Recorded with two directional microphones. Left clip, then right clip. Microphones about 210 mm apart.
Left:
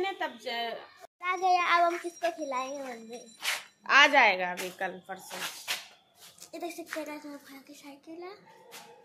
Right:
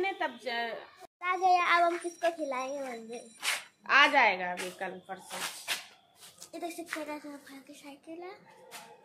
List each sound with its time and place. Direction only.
0.0 s a woman's voice: centre (ahead or behind)
3.4 s a sound: centre (ahead or behind)
3.8 s speech: 30° left (ahead or behind)
6.5 s speech: 15° left (ahead or behind)